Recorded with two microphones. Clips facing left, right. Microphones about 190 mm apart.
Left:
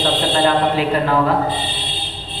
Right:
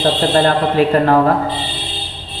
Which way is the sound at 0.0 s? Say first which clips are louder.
Right 3 dB; 45° right (ahead or behind).